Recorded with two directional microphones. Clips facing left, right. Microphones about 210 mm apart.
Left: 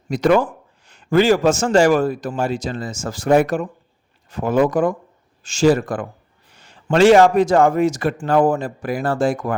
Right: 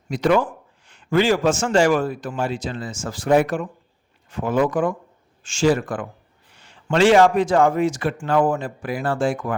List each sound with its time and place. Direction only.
0.1 s speech: 45° left (ahead or behind)